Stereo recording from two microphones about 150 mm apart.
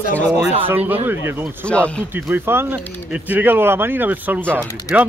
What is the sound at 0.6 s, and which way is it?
Speech, 10° right (ahead or behind).